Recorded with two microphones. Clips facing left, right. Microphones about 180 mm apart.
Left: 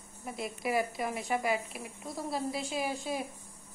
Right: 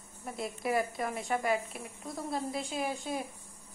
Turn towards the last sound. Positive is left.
turn(degrees=5)  # may be behind; listen again after turning